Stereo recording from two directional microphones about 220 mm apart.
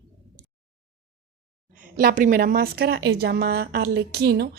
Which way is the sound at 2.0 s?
40° right (ahead or behind).